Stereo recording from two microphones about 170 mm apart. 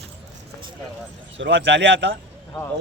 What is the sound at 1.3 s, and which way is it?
Speech, 90° right.